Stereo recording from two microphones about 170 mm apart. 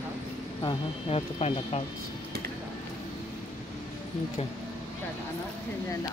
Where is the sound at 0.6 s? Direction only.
30° left (ahead or behind).